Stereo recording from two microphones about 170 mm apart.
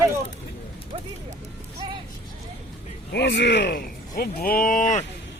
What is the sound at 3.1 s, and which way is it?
Speech, 85° left.